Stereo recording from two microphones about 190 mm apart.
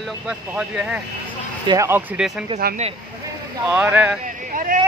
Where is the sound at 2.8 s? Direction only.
35° right (ahead or behind).